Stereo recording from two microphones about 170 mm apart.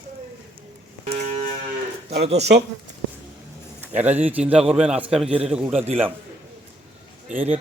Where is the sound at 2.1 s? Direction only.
40° right (ahead or behind).